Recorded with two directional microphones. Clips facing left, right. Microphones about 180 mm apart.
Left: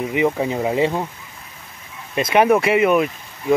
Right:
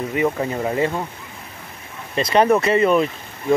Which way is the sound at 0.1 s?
15° left (ahead or behind).